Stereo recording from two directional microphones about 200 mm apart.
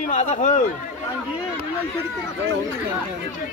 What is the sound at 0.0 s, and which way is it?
Speech, 35° left (ahead or behind).